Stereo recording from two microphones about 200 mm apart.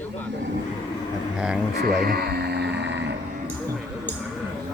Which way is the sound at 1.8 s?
50° right (ahead or behind).